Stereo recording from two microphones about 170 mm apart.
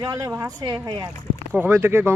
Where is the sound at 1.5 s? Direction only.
10° right (ahead or behind).